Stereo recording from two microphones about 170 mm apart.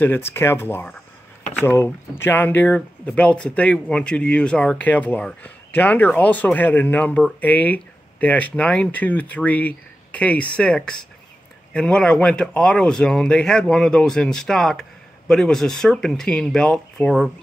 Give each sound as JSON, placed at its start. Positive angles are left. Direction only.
{"t": 0.0, "sound": "speech", "side_deg": 15}